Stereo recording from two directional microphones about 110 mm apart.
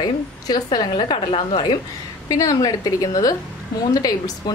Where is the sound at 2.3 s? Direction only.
30° left (ahead or behind).